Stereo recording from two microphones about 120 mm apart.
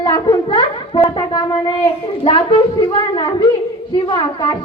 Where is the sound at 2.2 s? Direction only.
45° left (ahead or behind).